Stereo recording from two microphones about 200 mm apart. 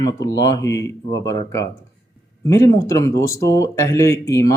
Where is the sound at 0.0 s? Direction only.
15° left (ahead or behind).